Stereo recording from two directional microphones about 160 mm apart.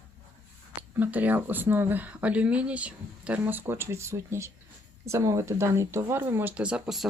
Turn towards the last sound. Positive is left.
turn(degrees=-5)  # may be behind; listen again after turning